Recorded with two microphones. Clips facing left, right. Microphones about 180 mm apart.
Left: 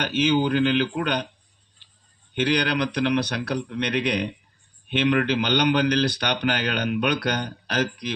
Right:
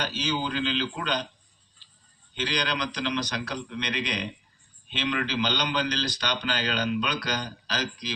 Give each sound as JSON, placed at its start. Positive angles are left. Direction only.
{"t": 0.0, "sound": "speech", "side_deg": 60}
{"t": 1.8, "sound": "a sound", "side_deg": 60}
{"t": 2.3, "sound": "speech", "side_deg": 60}